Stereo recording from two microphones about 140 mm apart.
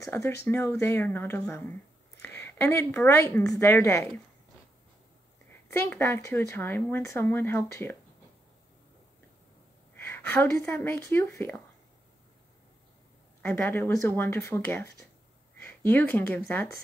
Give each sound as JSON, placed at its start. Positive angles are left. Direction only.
{"t": 0.0, "sound": "a woman's voice", "side_deg": 20}
{"t": 5.7, "sound": "speech", "side_deg": 20}
{"t": 9.9, "sound": "speech", "side_deg": 15}
{"t": 13.4, "sound": "speech", "side_deg": 15}
{"t": 15.5, "sound": "a sound", "side_deg": 15}
{"t": 16.4, "sound": "speech", "side_deg": 15}